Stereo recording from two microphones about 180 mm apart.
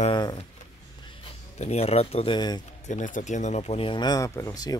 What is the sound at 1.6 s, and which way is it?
Speech, 35° left (ahead or behind).